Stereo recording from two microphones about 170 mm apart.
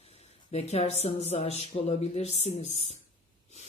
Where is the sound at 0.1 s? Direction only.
35° left (ahead or behind).